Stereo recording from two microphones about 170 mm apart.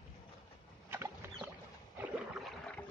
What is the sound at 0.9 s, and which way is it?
Rowboat, 15° right (ahead or behind).